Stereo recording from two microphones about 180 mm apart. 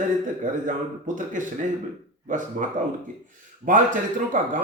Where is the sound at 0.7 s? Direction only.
45° right (ahead or behind).